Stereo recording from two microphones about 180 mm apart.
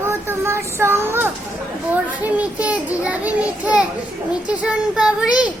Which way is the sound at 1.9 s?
10° right (ahead or behind).